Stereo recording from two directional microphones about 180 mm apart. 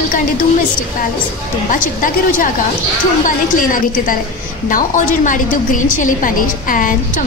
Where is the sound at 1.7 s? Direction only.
50° left (ahead or behind).